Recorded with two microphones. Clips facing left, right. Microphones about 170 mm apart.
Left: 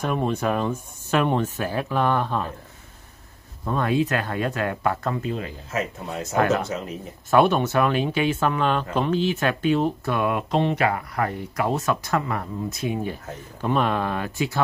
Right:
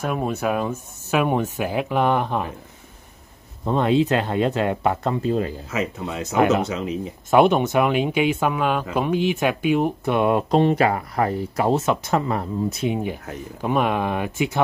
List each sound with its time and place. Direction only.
0.0 s speech: 5° right (ahead or behind)
3.6 s speech: 25° right (ahead or behind)
5.7 s speech: 80° right
6.3 s speech: 20° right (ahead or behind)
6.7 s speech: 90° right
7.2 s speech: 15° right (ahead or behind)